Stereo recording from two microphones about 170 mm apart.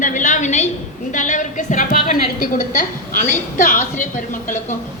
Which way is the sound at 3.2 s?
50° left (ahead or behind).